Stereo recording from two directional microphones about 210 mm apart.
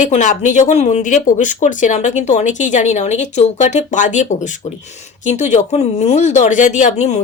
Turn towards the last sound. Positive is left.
turn(degrees=30)  # may be behind; listen again after turning